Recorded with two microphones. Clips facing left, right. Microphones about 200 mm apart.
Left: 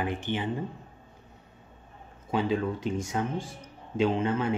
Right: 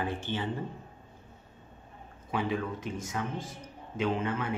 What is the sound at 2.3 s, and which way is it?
Speech, 25° left (ahead or behind).